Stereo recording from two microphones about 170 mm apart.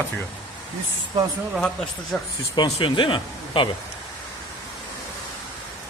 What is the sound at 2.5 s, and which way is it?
Speech, 30° left (ahead or behind).